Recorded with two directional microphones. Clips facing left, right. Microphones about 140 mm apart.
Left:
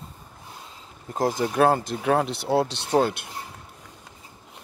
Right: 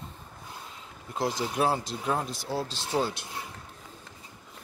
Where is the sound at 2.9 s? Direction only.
60° left (ahead or behind).